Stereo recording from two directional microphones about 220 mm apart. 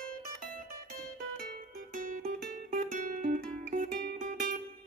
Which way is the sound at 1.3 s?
40° right (ahead or behind).